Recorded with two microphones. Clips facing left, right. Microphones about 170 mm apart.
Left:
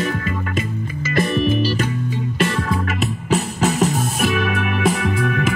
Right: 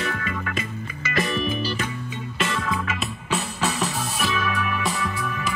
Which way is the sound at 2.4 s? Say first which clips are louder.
Left 2 dB; 40° left (ahead or behind).